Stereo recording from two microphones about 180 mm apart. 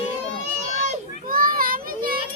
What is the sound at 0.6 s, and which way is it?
Children playing, 45° right (ahead or behind).